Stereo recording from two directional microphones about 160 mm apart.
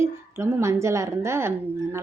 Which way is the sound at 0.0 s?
15° right (ahead or behind).